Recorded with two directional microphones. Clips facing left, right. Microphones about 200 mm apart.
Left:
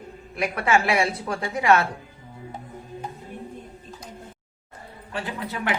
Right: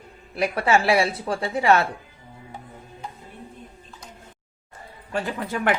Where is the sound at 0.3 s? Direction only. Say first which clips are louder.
Right 2 dB; 35° right (ahead or behind).